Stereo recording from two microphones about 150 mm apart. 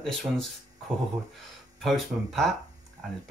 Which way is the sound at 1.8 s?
Centre (ahead or behind).